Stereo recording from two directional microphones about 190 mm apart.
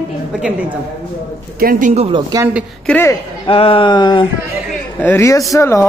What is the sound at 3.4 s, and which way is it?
Speech, 30° left (ahead or behind).